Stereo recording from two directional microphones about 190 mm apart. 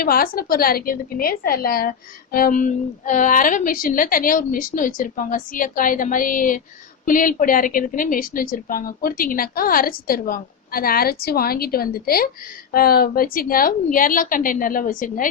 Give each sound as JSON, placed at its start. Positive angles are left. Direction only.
{"t": 0.0, "sound": "a woman's voice", "side_deg": 50}